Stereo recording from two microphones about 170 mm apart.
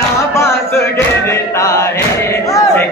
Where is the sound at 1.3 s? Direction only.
20° left (ahead or behind).